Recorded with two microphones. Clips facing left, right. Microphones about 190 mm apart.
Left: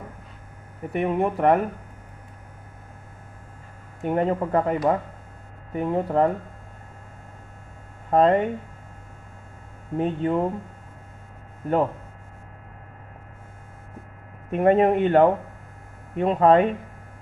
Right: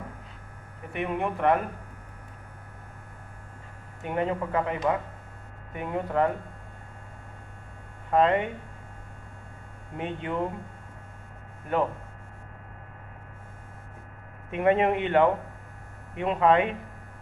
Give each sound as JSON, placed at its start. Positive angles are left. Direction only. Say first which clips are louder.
{"t": 0.9, "sound": "speech", "louder": "left 6 dB", "side_deg": 35}
{"t": 4.0, "sound": "speech", "louder": "left 5 dB", "side_deg": 40}
{"t": 8.1, "sound": "speech", "louder": "left 4 dB", "side_deg": 40}
{"t": 10.0, "sound": "speech", "louder": "left 8 dB", "side_deg": 40}
{"t": 14.5, "sound": "speech", "louder": "left 5 dB", "side_deg": 40}